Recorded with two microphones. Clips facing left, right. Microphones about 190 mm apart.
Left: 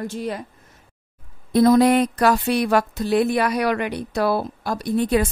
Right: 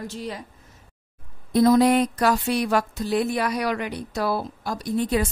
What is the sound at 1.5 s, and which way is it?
Speech, 60° left (ahead or behind).